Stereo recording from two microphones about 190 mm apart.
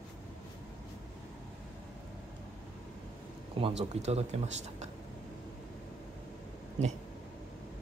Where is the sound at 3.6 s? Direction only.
30° right (ahead or behind).